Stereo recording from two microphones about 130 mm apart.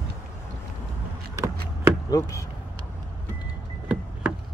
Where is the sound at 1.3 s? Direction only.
25° right (ahead or behind).